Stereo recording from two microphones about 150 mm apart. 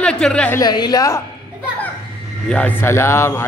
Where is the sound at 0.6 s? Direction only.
30° left (ahead or behind).